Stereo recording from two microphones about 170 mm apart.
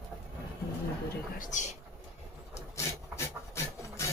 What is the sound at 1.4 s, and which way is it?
Speech, 45° left (ahead or behind).